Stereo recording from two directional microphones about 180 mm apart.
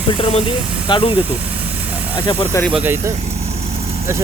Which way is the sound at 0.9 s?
30° left (ahead or behind).